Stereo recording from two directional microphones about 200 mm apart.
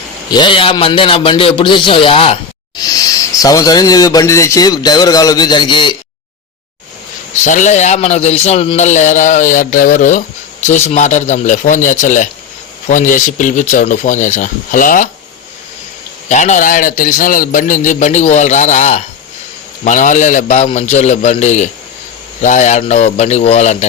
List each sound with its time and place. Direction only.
0.3 s a man's voice: 25° left (ahead or behind)
7.4 s a man's voice: 40° left (ahead or behind)
16.3 s a man's voice: 35° left (ahead or behind)